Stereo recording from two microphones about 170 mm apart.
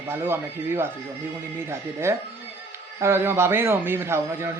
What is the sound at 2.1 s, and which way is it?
Speech, 15° right (ahead or behind).